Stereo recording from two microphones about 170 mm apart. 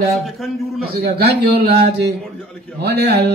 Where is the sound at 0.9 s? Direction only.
70° right (ahead or behind).